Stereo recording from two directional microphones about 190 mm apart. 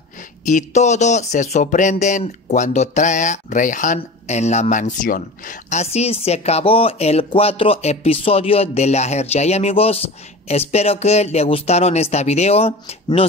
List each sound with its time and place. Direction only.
0.5 s speech: 40° left (ahead or behind)